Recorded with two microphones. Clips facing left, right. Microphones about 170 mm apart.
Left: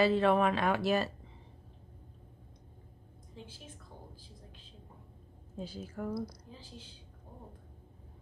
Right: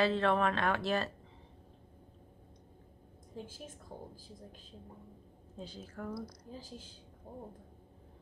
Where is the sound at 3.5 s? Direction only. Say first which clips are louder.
Right 4 dB; 45° right (ahead or behind).